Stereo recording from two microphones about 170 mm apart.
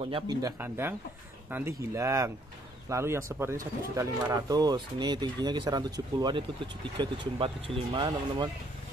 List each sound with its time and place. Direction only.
0.0 s speech: 25° right (ahead or behind)